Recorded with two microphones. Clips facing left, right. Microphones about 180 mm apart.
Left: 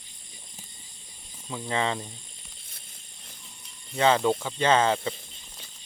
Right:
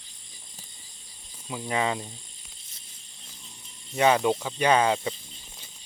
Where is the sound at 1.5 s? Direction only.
10° right (ahead or behind).